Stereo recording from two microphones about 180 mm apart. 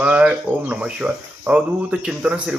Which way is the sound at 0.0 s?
5° right (ahead or behind).